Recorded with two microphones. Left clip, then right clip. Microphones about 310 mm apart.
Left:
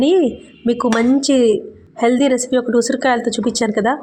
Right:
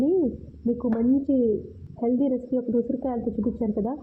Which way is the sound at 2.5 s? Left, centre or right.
Left.